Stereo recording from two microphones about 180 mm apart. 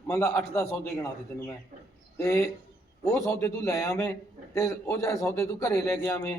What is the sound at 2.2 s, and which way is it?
A man's voice, 15° left (ahead or behind).